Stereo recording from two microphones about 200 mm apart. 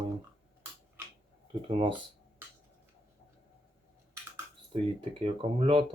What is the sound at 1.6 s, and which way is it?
Speech, 25° right (ahead or behind).